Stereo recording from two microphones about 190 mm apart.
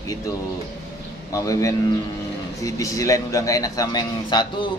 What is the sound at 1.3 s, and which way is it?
Speech, 20° left (ahead or behind).